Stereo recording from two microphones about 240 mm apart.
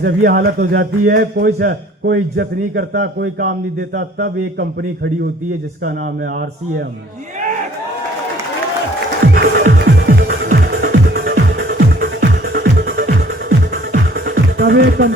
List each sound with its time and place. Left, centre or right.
0.0 s a man's voice: right
9.2 s music: right